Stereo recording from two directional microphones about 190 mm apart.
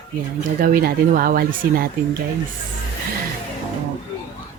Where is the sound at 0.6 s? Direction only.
50° right (ahead or behind).